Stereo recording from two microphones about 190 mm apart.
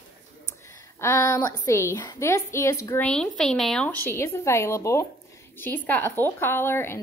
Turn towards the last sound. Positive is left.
turn(degrees=10)  # may be behind; listen again after turning